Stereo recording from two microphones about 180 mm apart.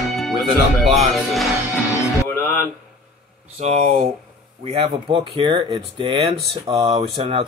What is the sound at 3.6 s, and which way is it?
Speech, 35° right (ahead or behind).